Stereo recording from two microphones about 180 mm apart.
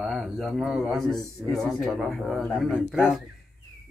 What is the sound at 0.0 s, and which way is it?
A man's voice, 5° right (ahead or behind).